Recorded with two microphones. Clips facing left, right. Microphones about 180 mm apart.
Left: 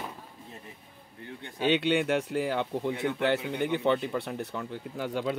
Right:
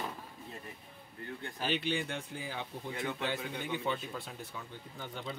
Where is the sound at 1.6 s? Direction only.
70° left (ahead or behind).